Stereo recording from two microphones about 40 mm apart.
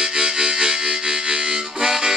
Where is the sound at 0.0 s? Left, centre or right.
Centre.